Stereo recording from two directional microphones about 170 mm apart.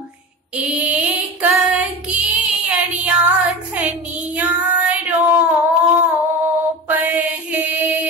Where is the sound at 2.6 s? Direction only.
10° right (ahead or behind).